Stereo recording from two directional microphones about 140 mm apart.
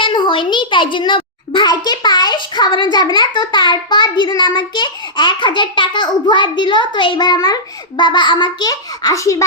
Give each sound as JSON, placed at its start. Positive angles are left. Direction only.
{"t": 0.0, "sound": "a child's voice", "side_deg": 35}